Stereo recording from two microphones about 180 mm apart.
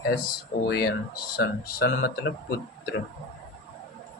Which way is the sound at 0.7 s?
60° left (ahead or behind).